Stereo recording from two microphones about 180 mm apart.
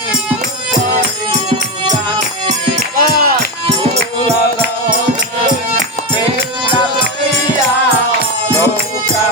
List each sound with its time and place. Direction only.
1.5 s music: 20° right (ahead or behind)
3.0 s music: 55° right (ahead or behind)